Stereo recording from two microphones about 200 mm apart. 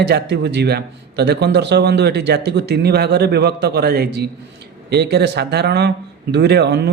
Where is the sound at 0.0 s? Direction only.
55° right (ahead or behind).